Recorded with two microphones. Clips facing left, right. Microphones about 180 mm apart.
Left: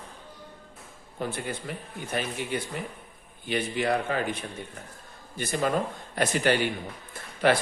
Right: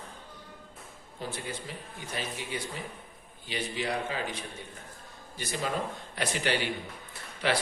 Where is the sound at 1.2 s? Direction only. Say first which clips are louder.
Left 5 dB; 55° left (ahead or behind).